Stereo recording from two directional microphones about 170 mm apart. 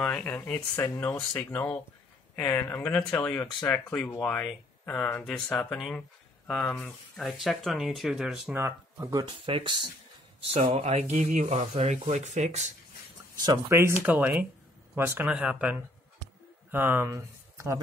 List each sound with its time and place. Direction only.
0.0 s speech: 5° left (ahead or behind); by 12.7 s 45° right (ahead or behind)
13.4 s speech: 20° right (ahead or behind)